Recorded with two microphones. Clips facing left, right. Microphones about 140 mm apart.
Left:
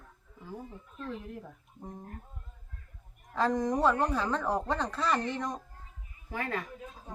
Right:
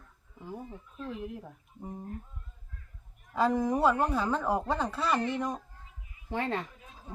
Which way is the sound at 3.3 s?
5° right (ahead or behind).